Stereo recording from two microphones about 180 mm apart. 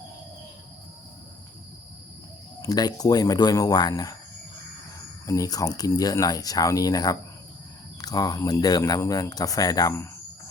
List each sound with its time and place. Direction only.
2.6 s speech: 20° left (ahead or behind)
5.2 s speech: 20° left (ahead or behind)